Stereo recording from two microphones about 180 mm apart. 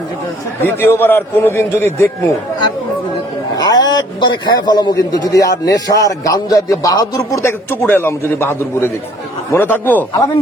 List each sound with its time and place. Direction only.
0.6 s a man's voice: 10° left (ahead or behind)
3.5 s a man's voice: 20° left (ahead or behind)